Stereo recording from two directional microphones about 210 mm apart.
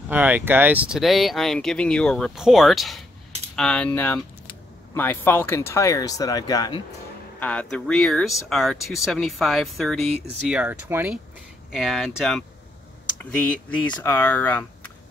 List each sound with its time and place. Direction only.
0.1 s speech: 10° right (ahead or behind); by 6.8 s 20° left (ahead or behind)
7.3 s speech: 5° left (ahead or behind)